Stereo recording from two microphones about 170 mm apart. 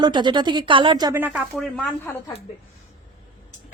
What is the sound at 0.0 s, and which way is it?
Speech, 25° right (ahead or behind).